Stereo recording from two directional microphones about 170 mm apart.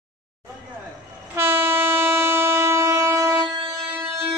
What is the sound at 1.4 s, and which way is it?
Train, 15° right (ahead or behind).